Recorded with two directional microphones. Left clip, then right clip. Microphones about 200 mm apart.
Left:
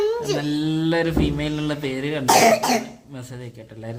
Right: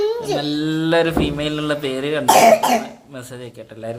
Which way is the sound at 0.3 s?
35° left (ahead or behind).